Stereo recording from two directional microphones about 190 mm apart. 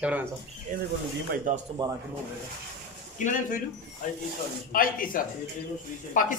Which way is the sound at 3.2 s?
40° left (ahead or behind).